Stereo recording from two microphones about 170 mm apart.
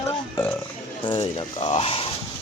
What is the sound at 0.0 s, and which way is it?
Burping, 15° left (ahead or behind).